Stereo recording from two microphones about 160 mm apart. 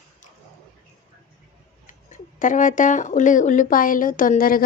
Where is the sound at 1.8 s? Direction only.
55° left (ahead or behind).